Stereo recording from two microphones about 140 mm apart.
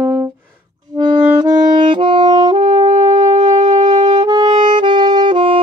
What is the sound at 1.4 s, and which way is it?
Saxophone, 30° right (ahead or behind).